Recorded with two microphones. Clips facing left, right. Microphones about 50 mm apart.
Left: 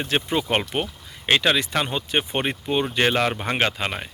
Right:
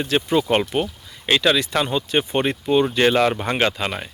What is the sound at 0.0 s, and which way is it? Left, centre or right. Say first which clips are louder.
Speech: right 4 dB; left.